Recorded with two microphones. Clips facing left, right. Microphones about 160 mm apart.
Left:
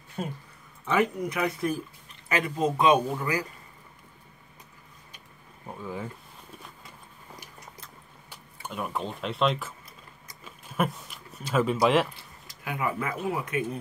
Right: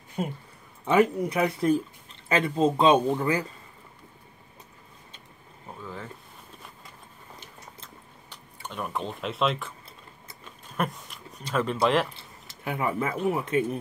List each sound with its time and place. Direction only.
0.8 s speech: 30° right (ahead or behind)
5.8 s speech: 15° left (ahead or behind)
8.3 s speech: 5° left (ahead or behind)
12.2 s a sound: 25° right (ahead or behind)
13.3 s speech: 25° right (ahead or behind)